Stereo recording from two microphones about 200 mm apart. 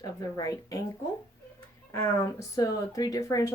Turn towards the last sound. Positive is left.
turn(degrees=15)  # may be behind; listen again after turning